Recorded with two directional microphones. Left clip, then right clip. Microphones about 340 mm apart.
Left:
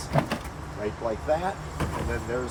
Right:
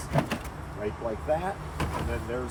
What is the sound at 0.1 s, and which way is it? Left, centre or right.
Vehicle, centre.